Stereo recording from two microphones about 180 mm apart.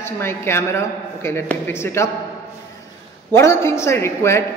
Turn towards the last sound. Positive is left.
turn(degrees=15)  # may be behind; listen again after turning